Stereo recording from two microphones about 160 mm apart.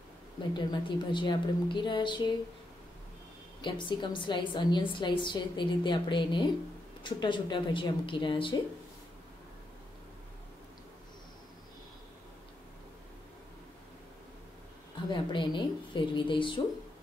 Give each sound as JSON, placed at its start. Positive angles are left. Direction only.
{"t": 0.6, "sound": "a woman's voice", "side_deg": 30}
{"t": 3.6, "sound": "a woman's voice", "side_deg": 30}
{"t": 15.0, "sound": "speech", "side_deg": 30}